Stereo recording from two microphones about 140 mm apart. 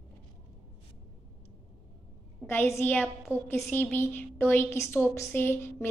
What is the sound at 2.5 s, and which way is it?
A woman's voice, 20° left (ahead or behind).